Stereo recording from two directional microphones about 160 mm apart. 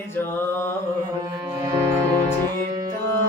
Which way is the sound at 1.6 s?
20° right (ahead or behind).